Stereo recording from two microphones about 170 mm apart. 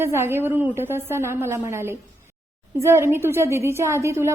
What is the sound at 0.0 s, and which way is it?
A woman's voice, 15° right (ahead or behind).